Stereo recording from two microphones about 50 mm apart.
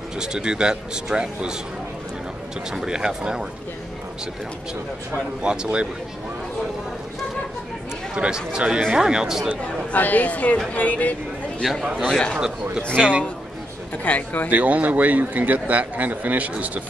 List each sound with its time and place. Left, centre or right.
0.2 s a man's voice: centre
2.7 s a man's voice: centre
5.4 s speech: centre
8.1 s a man's voice: centre
9.9 s speech: left
11.6 s a man's voice: centre
12.4 s a man's voice: centre
12.8 s a man's voice: left
14.0 s speech: left
14.5 s a man's voice: right